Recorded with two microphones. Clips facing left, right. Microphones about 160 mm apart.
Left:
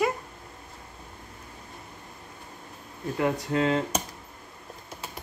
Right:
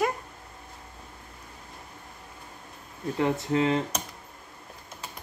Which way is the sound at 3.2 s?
25° right (ahead or behind).